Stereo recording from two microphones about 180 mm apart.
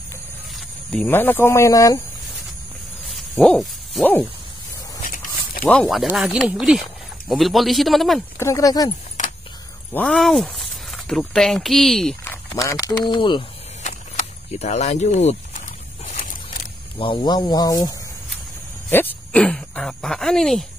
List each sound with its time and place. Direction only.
0.9 s speech: 10° left (ahead or behind)
3.3 s owl: centre (ahead or behind)
5.0 s a sound: 50° left (ahead or behind)
5.6 s speech: 5° left (ahead or behind)
8.4 s speech: 15° left (ahead or behind)
9.9 s speech: 5° left (ahead or behind); by 13.4 s 25° left (ahead or behind)
13.8 s a sound: 40° left (ahead or behind)
17.0 s speech: 25° left (ahead or behind); by 20.6 s centre (ahead or behind)